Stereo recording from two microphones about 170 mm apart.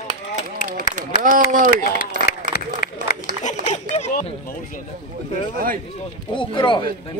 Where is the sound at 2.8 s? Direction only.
55° left (ahead or behind).